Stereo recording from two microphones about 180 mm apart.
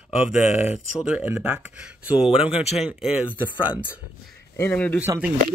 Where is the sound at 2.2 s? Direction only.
35° left (ahead or behind).